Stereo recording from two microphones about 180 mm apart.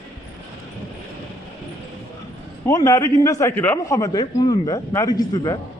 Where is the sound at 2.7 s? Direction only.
20° left (ahead or behind).